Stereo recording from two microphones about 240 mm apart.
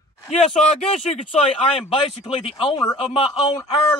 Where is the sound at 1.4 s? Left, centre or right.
Left.